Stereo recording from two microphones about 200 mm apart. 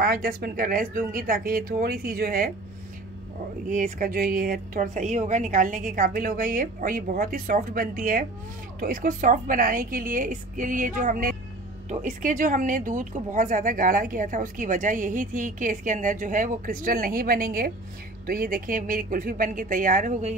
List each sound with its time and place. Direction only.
0.0 s a woman's voice: 50° right (ahead or behind)
3.6 s a woman's voice: 40° right (ahead or behind)